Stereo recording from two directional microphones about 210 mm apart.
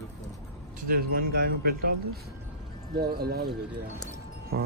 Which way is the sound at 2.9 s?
50° right (ahead or behind).